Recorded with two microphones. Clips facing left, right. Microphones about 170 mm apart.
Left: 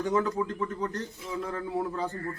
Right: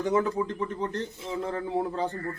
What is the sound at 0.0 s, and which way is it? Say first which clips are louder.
Speech: right 2 dB; 20° right (ahead or behind).